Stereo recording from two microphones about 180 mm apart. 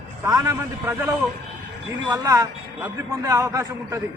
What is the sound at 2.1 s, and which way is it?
Speech, 15° right (ahead or behind).